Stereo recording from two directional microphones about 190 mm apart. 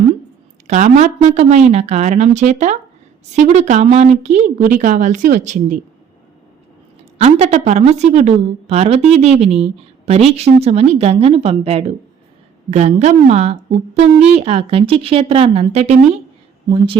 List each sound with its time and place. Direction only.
0.7 s a woman's voice: 40° right (ahead or behind)
7.2 s a woman's voice: 35° right (ahead or behind)